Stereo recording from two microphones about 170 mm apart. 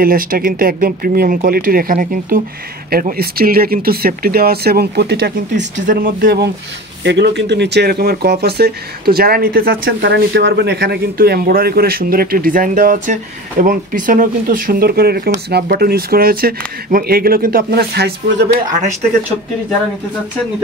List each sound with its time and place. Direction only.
0.0 s speech: 60° right (ahead or behind)
5.9 s speech: 55° right (ahead or behind)
7.0 s speech: 90° right; by 18.6 s 70° right (ahead or behind)